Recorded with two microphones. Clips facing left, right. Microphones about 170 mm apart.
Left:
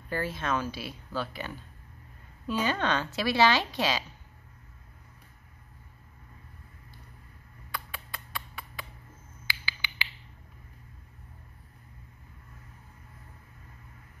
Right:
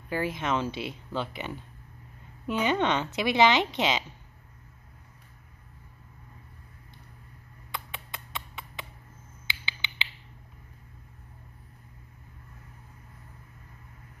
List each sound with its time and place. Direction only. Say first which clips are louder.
0.1 s a woman's voice: right 2 dB; 15° right (ahead or behind)
7.7 s a sound: right 1 dB; 20° right (ahead or behind)
9.5 s finger snapping: even; 25° right (ahead or behind)